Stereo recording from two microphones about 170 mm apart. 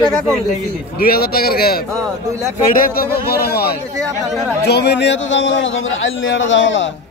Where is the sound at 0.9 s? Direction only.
60° left (ahead or behind).